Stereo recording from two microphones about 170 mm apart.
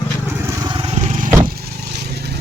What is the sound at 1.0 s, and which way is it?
Vehicle, 45° right (ahead or behind).